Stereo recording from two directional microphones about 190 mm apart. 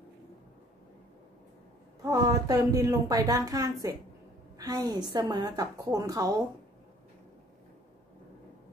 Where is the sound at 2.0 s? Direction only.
20° right (ahead or behind).